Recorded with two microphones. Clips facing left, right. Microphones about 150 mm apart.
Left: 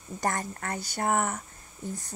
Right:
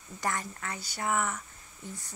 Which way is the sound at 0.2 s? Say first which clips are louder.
Left 3 dB; 45° left (ahead or behind).